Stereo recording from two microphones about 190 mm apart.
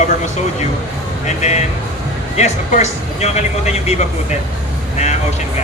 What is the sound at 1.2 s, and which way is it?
Speech, 35° left (ahead or behind).